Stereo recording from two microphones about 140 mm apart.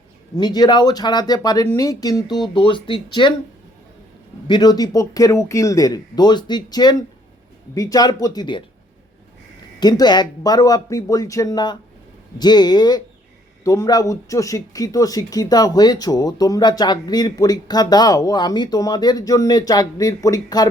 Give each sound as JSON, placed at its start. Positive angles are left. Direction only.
{"t": 0.3, "sound": "speech", "side_deg": 30}
{"t": 4.4, "sound": "speech", "side_deg": 30}
{"t": 9.8, "sound": "speech", "side_deg": 30}